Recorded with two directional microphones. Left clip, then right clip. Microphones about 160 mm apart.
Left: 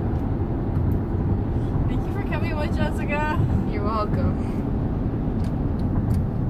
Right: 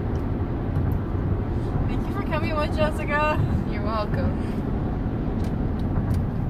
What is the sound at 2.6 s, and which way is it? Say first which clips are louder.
Speech: right 3 dB; centre (ahead or behind).